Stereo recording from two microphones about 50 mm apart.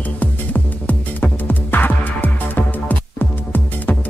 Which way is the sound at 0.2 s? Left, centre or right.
Left.